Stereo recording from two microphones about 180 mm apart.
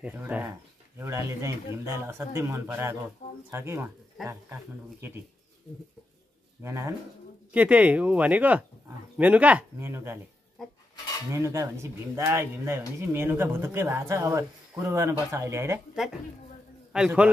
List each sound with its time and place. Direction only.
0.0 s speech: 10° right (ahead or behind)
6.6 s speech: 15° right (ahead or behind)
10.6 s dishes: centre (ahead or behind)
11.3 s speech: 15° right (ahead or behind)
15.9 s a man's voice: centre (ahead or behind)